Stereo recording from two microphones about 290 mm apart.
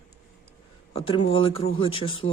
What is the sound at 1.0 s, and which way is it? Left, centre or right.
Speech, centre.